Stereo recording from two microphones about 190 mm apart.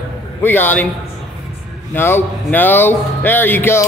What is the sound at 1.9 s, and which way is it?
Speech, 10° left (ahead or behind).